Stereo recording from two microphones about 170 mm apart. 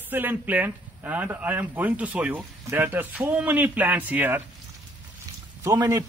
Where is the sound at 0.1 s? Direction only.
10° right (ahead or behind).